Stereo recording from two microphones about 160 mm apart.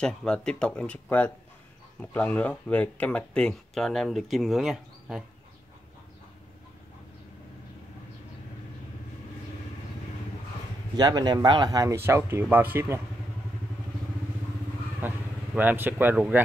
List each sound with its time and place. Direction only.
0.0 s speech: 5° left (ahead or behind)
11.0 s speech: 25° right (ahead or behind)
15.0 s speech: 10° right (ahead or behind)